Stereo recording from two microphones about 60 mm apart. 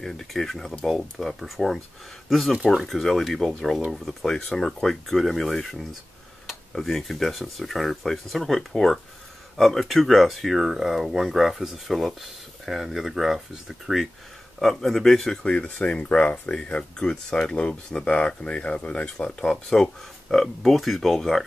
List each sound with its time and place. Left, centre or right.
0.0 s speech: centre
15.6 s speech: centre
19.4 s speech: centre